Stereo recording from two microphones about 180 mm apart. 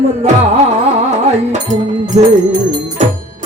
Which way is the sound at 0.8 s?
40° right (ahead or behind).